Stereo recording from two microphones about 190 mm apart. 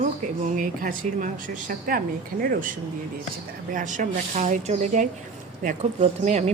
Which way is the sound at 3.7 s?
45° right (ahead or behind).